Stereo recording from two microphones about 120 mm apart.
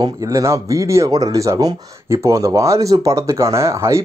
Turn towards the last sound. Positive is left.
turn(degrees=-25)  # may be behind; listen again after turning